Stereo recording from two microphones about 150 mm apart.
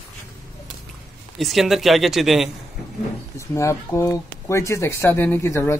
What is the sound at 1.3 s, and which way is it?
Speech, centre (ahead or behind).